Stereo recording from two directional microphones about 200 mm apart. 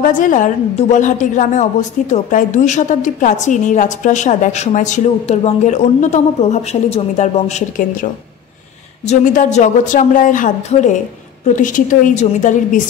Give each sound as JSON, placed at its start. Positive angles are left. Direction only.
{"t": 0.0, "sound": "a woman's voice", "side_deg": 40}